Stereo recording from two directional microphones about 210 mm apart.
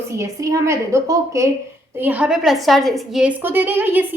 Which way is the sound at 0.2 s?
15° right (ahead or behind).